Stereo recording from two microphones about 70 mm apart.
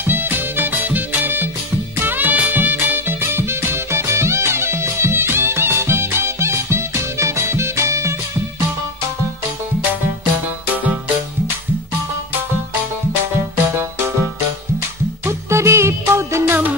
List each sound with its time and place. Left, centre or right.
0.0 s music: right
15.2 s music: right